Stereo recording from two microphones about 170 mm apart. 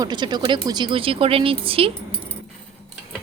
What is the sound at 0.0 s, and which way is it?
A woman's voice, 25° right (ahead or behind).